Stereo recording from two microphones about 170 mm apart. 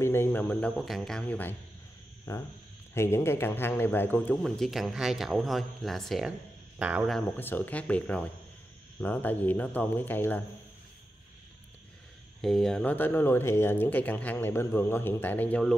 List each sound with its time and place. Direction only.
0.0 s speech: 15° left (ahead or behind)
4.4 s speech: centre (ahead or behind)
7.2 s speech: 10° left (ahead or behind)
12.4 s speech: centre (ahead or behind)